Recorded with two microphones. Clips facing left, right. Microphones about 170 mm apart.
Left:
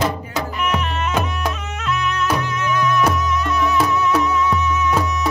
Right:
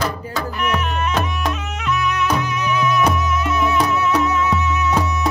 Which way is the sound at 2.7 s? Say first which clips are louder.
Even; 5° right (ahead or behind).